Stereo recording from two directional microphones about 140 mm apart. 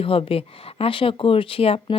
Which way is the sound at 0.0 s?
40° left (ahead or behind).